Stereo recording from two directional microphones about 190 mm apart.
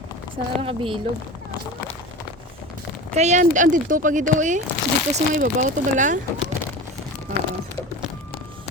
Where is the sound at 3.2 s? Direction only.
40° right (ahead or behind).